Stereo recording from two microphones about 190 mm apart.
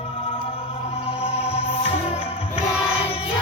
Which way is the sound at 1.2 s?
30° left (ahead or behind).